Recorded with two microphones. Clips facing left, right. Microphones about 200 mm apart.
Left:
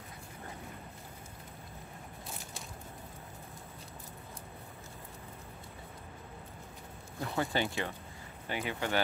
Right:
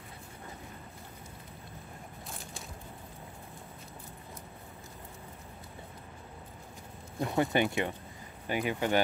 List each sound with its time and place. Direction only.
7.2 s speech: 20° right (ahead or behind)